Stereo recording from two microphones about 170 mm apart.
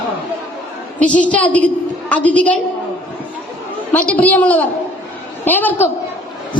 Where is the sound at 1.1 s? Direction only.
10° left (ahead or behind).